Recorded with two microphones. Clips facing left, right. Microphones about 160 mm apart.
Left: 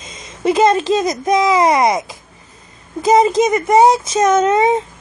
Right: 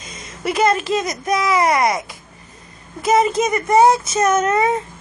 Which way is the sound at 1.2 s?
20° left (ahead or behind).